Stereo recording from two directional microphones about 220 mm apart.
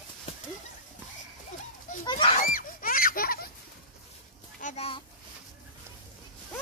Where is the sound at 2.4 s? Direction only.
40° left (ahead or behind).